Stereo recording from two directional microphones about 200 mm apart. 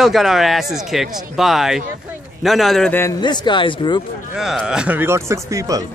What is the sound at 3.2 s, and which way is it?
Speech, 20° left (ahead or behind).